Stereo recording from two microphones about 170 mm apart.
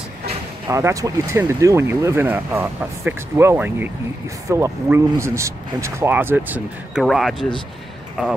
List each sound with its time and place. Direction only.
0.7 s speech: 20° right (ahead or behind)
7.1 s speech: centre (ahead or behind)